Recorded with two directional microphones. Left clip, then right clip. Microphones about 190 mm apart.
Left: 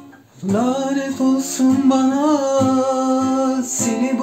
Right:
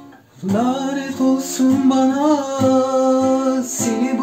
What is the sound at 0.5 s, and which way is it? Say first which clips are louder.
Music: left 1 dB; 15° left (ahead or behind).